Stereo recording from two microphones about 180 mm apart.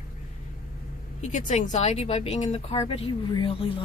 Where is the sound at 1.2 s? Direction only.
40° left (ahead or behind).